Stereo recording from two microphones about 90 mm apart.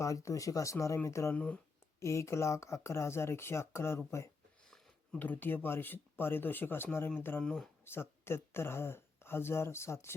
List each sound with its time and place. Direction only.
0.0 s speech: 35° left (ahead or behind)
7.4 s speech: 5° left (ahead or behind)
7.9 s speech: 25° left (ahead or behind)